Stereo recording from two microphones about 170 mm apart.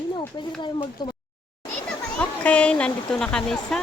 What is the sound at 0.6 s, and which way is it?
Speech, 25° left (ahead or behind).